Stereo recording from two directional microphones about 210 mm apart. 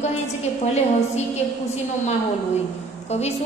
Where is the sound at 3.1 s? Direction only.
30° left (ahead or behind).